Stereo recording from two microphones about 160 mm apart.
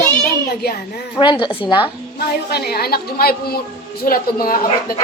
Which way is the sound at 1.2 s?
30° left (ahead or behind).